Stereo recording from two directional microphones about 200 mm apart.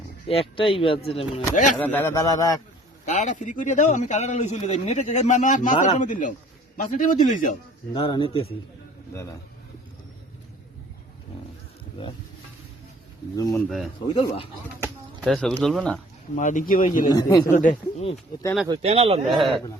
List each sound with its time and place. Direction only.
0.3 s speech: 30° left (ahead or behind)
1.8 s a man's voice: 10° left (ahead or behind)
3.1 s a man's voice: 35° left (ahead or behind)
7.9 s speech: 25° left (ahead or behind)
13.3 s a man's voice: 15° left (ahead or behind)
13.7 s speech: centre (ahead or behind)
14.1 s speech: 25° left (ahead or behind)
15.2 s speech: centre (ahead or behind)
16.3 s a man's voice: 40° left (ahead or behind)
17.1 s a man's voice: 20° left (ahead or behind)
17.4 s a man's voice: 40° left (ahead or behind)
18.7 s speech: 30° right (ahead or behind)
19.3 s speech: centre (ahead or behind)